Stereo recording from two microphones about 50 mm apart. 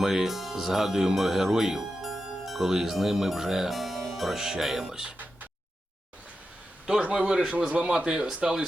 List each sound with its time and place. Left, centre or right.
0.0 s speech: centre
5.1 s a sound: right
7.0 s a man's voice: centre